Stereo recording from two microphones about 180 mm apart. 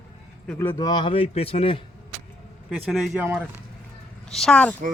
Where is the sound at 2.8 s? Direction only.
Centre (ahead or behind).